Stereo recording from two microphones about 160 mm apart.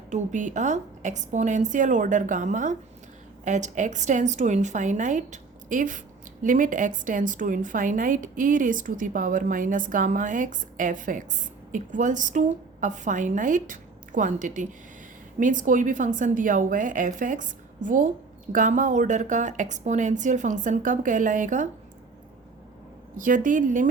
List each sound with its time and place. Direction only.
0.1 s a woman's voice: 50° right (ahead or behind)
23.1 s a woman's voice: 55° right (ahead or behind)